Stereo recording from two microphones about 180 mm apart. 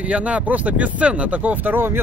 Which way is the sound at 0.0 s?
5° right (ahead or behind).